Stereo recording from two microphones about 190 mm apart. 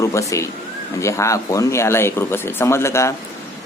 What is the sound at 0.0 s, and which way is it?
Speech, 15° left (ahead or behind).